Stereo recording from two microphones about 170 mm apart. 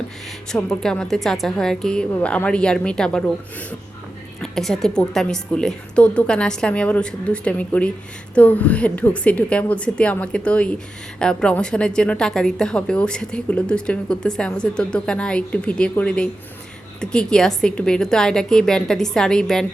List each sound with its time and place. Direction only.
0.5 s a woman's voice: 5° left (ahead or behind)